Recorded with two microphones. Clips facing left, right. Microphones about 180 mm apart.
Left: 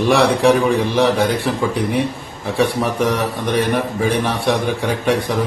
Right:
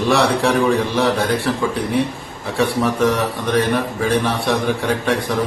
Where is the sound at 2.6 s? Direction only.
15° left (ahead or behind).